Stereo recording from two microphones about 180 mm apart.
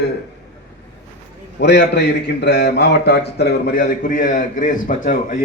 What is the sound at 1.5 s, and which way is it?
A man's voice, 70° left (ahead or behind).